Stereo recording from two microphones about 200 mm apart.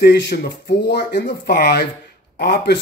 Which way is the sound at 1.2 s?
45° left (ahead or behind).